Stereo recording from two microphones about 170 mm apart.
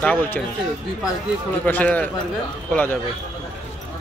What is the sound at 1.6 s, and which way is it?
Speech, 10° left (ahead or behind).